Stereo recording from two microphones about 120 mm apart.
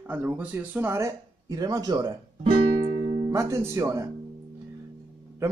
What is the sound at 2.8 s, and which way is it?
Music, 80° right.